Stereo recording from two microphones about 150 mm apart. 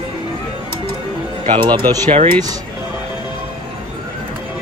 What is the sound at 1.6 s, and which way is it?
Speech, 30° right (ahead or behind).